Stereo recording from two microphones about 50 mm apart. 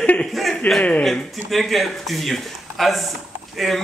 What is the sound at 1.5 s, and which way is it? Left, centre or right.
Speech, centre.